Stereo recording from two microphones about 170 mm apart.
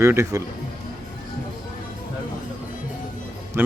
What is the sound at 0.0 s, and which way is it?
Speech, 15° right (ahead or behind).